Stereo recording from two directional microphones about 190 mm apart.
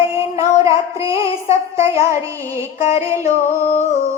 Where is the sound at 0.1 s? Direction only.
15° right (ahead or behind).